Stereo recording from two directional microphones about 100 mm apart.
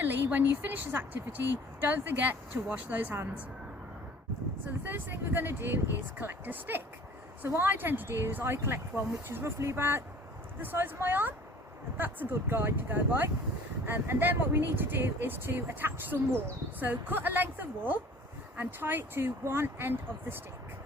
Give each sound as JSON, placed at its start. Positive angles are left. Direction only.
{"t": 0.0, "sound": "a woman's voice", "side_deg": -20}
{"t": 4.8, "sound": "a woman's voice", "side_deg": -20}